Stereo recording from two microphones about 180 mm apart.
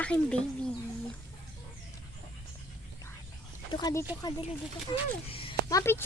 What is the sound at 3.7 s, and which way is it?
Speech, 20° left (ahead or behind).